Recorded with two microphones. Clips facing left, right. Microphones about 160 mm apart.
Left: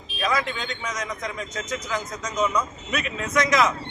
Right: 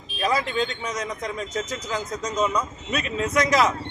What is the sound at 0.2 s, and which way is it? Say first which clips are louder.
A man's voice: right 2 dB; 35° right (ahead or behind).